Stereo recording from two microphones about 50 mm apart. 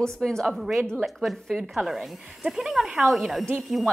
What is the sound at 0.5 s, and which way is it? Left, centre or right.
Speech, centre.